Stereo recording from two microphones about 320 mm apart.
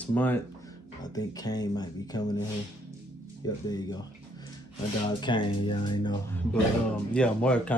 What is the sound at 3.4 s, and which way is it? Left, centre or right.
Speech, centre.